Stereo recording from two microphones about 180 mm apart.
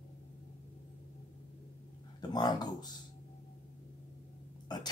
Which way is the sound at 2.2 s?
20° left (ahead or behind).